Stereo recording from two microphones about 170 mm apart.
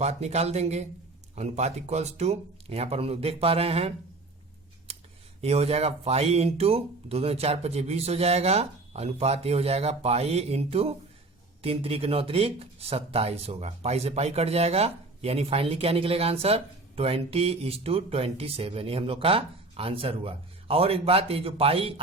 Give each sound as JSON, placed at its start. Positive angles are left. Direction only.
{"t": 0.0, "sound": "speech", "side_deg": -40}
{"t": 5.4, "sound": "speech", "side_deg": -35}